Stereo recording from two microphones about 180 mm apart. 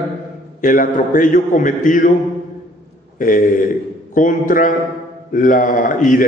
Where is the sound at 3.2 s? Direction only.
50° left (ahead or behind).